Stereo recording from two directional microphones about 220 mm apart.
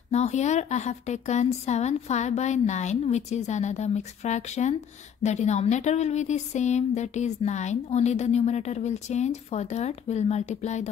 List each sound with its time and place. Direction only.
0.1 s speech: 30° left (ahead or behind)